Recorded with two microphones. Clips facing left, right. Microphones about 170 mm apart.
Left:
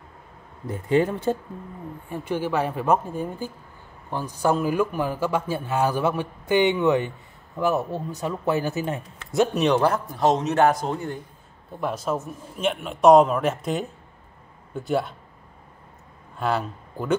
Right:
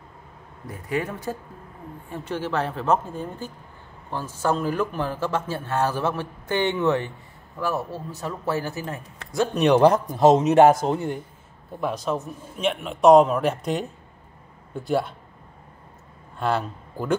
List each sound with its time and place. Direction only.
0.7 s speech: 25° left (ahead or behind)
2.0 s a man's voice: 15° left (ahead or behind)
9.7 s speech: 15° right (ahead or behind)
11.7 s a man's voice: centre (ahead or behind)
16.3 s a man's voice: centre (ahead or behind)